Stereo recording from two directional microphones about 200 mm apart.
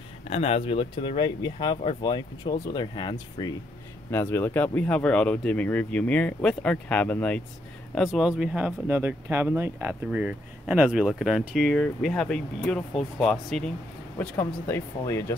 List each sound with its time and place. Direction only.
0.3 s speech: 30° left (ahead or behind)
4.1 s speech: 10° left (ahead or behind)